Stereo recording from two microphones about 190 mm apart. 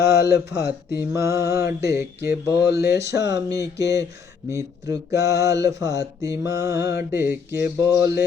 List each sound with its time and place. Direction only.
0.0 s speech: 15° right (ahead or behind)